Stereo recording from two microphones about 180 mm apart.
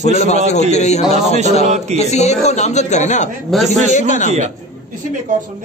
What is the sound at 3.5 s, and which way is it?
Speech, centre (ahead or behind).